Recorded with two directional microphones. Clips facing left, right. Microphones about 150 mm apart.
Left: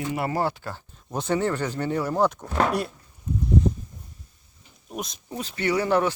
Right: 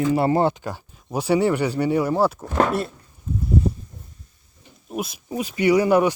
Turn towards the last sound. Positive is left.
turn(degrees=-10)  # may be behind; listen again after turning